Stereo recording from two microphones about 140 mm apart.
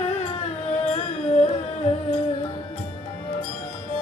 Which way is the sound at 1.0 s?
50° left (ahead or behind).